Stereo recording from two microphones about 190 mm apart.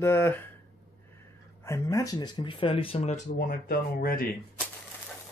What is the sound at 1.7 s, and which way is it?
Speech, 15° left (ahead or behind).